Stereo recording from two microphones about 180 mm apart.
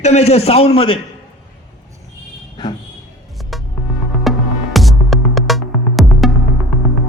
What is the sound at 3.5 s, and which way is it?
Music, centre (ahead or behind).